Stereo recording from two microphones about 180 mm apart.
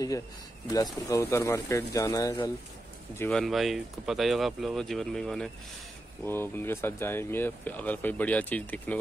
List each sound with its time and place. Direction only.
1.0 s speech: 15° left (ahead or behind)
3.2 s speech: 5° left (ahead or behind)
6.2 s speech: 10° left (ahead or behind)